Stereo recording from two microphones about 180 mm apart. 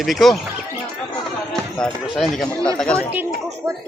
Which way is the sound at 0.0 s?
Centre (ahead or behind).